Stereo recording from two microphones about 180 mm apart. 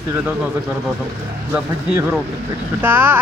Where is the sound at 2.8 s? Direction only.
10° right (ahead or behind).